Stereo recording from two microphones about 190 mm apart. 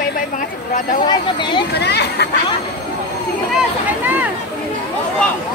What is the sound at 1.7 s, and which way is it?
Speech, 60° left (ahead or behind).